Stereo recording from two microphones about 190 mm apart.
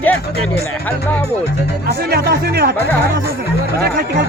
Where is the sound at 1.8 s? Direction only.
50° right (ahead or behind).